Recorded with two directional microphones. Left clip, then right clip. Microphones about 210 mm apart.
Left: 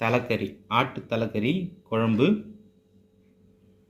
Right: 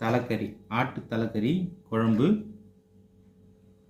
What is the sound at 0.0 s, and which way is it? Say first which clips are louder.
Speech: left 3 dB; 25° left (ahead or behind).